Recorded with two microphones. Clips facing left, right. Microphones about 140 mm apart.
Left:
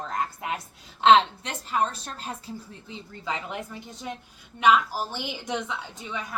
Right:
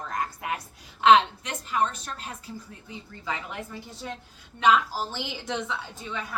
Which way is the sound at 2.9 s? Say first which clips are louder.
Left 1 dB; 20° left (ahead or behind).